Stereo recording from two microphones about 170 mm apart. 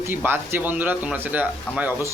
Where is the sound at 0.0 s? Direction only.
10° right (ahead or behind).